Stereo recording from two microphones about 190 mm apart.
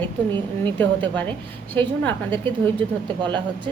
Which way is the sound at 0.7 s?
10° left (ahead or behind).